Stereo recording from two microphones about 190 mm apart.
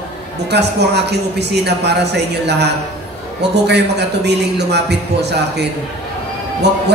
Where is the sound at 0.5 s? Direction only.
60° right (ahead or behind).